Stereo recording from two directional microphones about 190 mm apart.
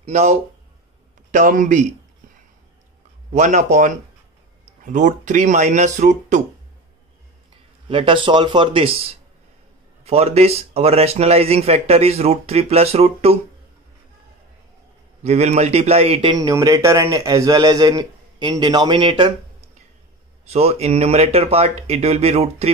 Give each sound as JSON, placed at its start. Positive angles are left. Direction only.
{"t": 0.0, "sound": "speech", "side_deg": -35}
{"t": 3.3, "sound": "speech", "side_deg": -40}
{"t": 7.9, "sound": "a man's voice", "side_deg": -25}
{"t": 15.2, "sound": "a man's voice", "side_deg": -35}
{"t": 20.4, "sound": "speech", "side_deg": -30}